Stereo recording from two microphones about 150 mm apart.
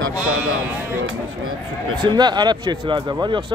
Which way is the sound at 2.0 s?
30° right (ahead or behind).